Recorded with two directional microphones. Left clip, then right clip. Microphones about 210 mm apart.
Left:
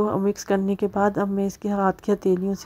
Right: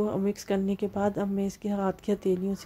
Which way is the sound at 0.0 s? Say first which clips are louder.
Left 6 dB; 15° left (ahead or behind).